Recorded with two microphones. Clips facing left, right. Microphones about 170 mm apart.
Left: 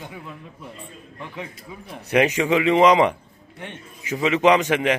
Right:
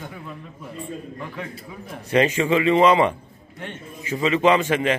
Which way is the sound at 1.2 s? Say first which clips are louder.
Right 2 dB; 15° left (ahead or behind).